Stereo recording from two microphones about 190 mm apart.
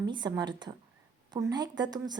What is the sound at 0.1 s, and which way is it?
A woman's voice, 25° right (ahead or behind).